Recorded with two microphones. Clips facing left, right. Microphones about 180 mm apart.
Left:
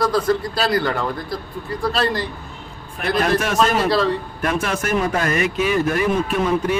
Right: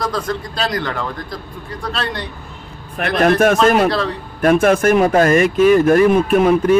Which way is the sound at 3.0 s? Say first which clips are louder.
Right 6 dB; 65° right (ahead or behind).